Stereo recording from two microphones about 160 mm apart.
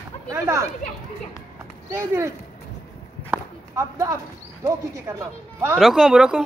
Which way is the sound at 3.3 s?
20° right (ahead or behind).